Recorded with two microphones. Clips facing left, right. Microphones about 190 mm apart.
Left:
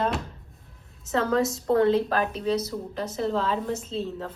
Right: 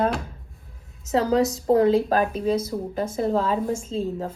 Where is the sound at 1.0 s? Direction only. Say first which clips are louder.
Right 3 dB; 35° right (ahead or behind).